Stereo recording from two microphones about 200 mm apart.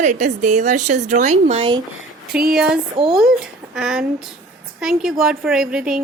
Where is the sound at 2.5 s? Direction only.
Centre (ahead or behind).